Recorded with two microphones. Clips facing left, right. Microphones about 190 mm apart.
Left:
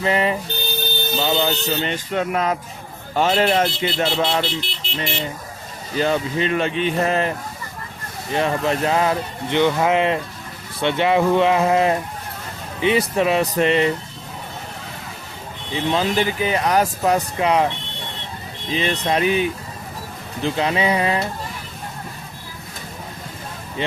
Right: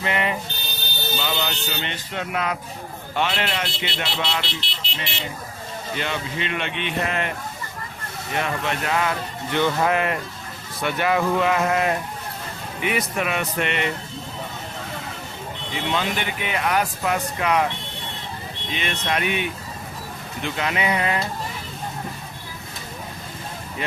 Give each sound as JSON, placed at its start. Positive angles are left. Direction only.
{"t": 0.0, "sound": "speech", "side_deg": 35}
{"t": 1.6, "sound": "speech", "side_deg": 40}
{"t": 6.0, "sound": "speech", "side_deg": 40}
{"t": 9.6, "sound": "speech", "side_deg": 20}
{"t": 15.7, "sound": "speech", "side_deg": 30}
{"t": 18.7, "sound": "speech", "side_deg": 30}